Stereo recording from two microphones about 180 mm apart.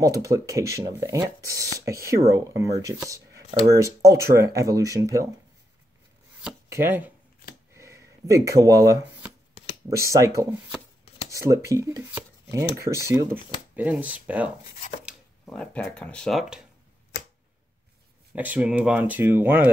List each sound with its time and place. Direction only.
0.0 s speech: 20° right (ahead or behind)
6.7 s speech: 10° right (ahead or behind)
7.7 s shuffling cards: 15° right (ahead or behind)
9.8 s speech: 15° right (ahead or behind)
15.4 s speech: 5° left (ahead or behind)
18.3 s speech: 10° right (ahead or behind)